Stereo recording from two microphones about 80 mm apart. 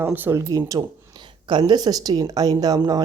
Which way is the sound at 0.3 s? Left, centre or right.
Right.